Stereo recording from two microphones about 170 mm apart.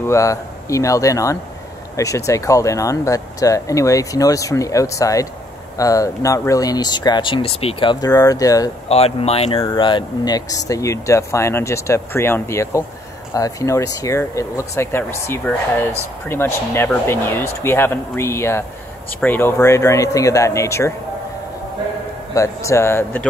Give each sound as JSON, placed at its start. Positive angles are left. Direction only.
{"t": 0.0, "sound": "speech", "side_deg": 15}
{"t": 8.8, "sound": "speech", "side_deg": 35}
{"t": 22.3, "sound": "speech", "side_deg": 20}